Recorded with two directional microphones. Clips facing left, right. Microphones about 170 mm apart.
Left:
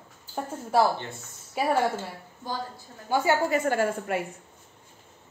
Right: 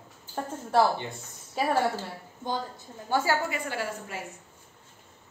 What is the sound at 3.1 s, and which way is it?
Speech, 20° left (ahead or behind).